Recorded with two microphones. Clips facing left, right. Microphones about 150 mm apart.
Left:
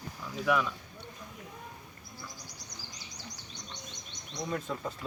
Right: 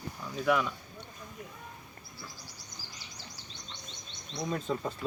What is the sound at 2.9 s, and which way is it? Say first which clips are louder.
Insect: left 2 dB; 15° left (ahead or behind).